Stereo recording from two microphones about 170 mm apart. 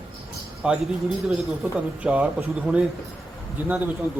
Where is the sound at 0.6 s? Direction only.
5° right (ahead or behind).